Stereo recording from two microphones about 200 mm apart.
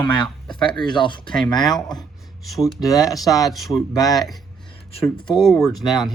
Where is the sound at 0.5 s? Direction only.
25° left (ahead or behind).